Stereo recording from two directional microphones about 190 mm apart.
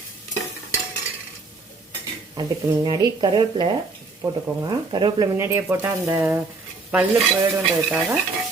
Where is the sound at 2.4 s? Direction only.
20° right (ahead or behind).